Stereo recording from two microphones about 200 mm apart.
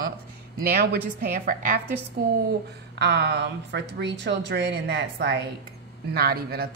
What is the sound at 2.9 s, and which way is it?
A woman's voice, 60° right (ahead or behind).